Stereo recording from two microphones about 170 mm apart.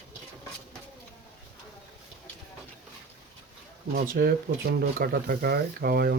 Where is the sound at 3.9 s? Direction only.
55° right (ahead or behind).